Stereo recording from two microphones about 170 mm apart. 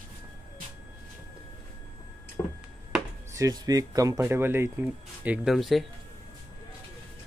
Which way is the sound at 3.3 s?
20° right (ahead or behind).